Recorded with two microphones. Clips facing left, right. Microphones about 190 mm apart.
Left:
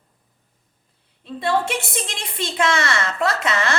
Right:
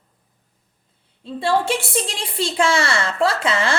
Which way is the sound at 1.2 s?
30° right (ahead or behind).